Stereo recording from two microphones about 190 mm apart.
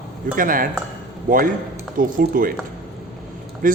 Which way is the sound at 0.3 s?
45° right (ahead or behind).